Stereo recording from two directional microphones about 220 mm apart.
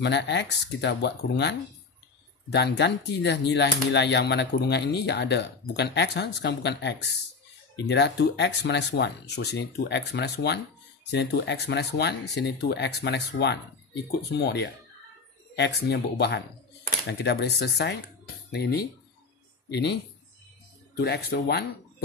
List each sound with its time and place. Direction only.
0.0 s speech: 55° left (ahead or behind)
21.0 s speech: 45° left (ahead or behind)